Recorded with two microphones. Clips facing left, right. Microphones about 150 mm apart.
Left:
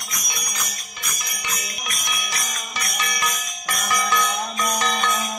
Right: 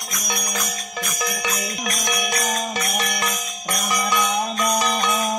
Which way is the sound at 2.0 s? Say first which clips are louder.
Right 7 dB; 60° right (ahead or behind).